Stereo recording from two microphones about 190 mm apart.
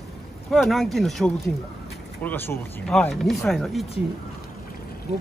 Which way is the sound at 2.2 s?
10° left (ahead or behind).